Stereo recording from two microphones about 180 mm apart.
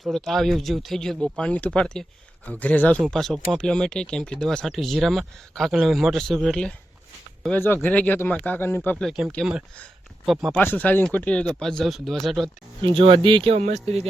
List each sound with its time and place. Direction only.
0.0 s speech: centre (ahead or behind)
10.6 s speech: 10° left (ahead or behind)
12.8 s speech: 30° right (ahead or behind)